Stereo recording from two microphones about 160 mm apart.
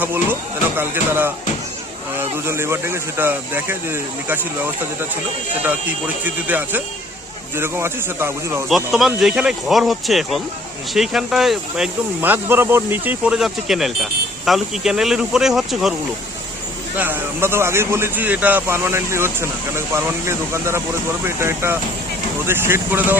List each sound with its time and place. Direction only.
0.0 s speech: 10° right (ahead or behind)
6.2 s speech: 10° right (ahead or behind)
8.7 s speech: centre (ahead or behind)
17.0 s speech: 10° right (ahead or behind)